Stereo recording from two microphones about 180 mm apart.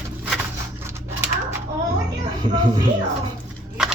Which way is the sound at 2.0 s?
25° right (ahead or behind).